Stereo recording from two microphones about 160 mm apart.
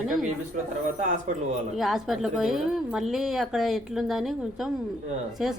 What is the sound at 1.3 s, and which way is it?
Speech, 50° right (ahead or behind).